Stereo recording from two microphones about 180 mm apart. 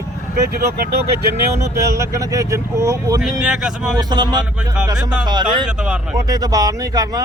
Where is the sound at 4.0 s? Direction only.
25° right (ahead or behind).